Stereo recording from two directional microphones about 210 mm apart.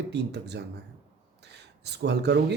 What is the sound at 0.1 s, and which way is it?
Speech, 55° right (ahead or behind).